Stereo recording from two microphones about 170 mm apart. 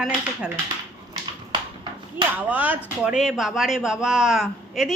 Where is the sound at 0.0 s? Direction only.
5° right (ahead or behind).